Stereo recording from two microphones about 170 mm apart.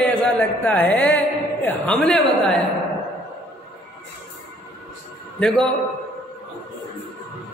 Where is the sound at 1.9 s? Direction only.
5° left (ahead or behind).